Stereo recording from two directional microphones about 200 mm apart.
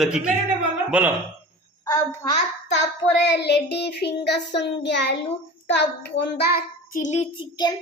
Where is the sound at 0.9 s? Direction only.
5° right (ahead or behind).